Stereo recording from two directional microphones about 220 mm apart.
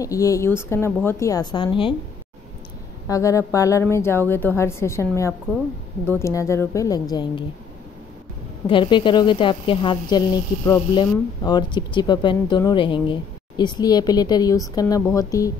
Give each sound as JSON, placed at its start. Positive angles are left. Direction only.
{"t": 0.0, "sound": "a woman's voice", "side_deg": 15}
{"t": 3.1, "sound": "a woman's voice", "side_deg": 15}
{"t": 8.6, "sound": "a woman's voice", "side_deg": 20}